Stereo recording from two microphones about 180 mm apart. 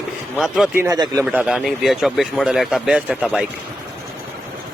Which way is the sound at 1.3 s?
5° right (ahead or behind).